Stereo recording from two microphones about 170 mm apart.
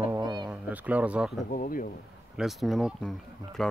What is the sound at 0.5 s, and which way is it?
Speech, 10° right (ahead or behind).